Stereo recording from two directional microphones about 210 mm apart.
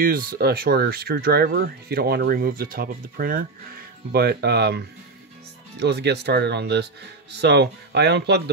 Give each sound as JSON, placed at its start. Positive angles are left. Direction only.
{"t": 0.0, "sound": "speech", "side_deg": -45}